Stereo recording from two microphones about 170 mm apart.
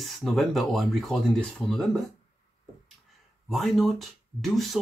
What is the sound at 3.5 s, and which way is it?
Speech, centre (ahead or behind).